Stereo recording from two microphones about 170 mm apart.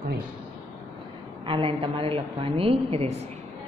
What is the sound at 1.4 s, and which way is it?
A woman's voice, 30° right (ahead or behind).